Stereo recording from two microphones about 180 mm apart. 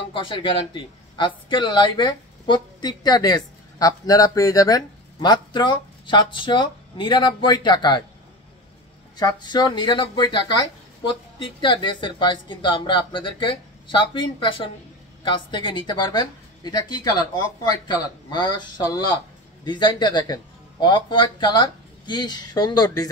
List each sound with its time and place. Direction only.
0.1 s a woman's voice: 30° left (ahead or behind)
9.1 s a woman's voice: 25° left (ahead or behind)